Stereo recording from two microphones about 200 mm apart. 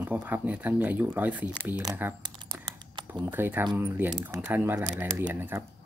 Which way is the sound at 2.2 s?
20° right (ahead or behind).